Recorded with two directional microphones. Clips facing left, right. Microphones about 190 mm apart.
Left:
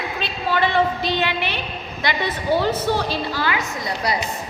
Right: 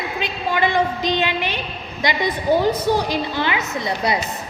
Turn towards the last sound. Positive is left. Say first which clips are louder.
# right 3 dB
turn(degrees=-25)  # may be behind; listen again after turning